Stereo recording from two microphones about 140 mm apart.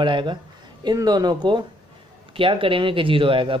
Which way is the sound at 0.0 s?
35° right (ahead or behind).